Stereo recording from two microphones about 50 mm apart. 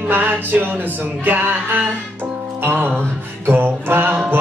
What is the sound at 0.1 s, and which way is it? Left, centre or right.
Speech, right.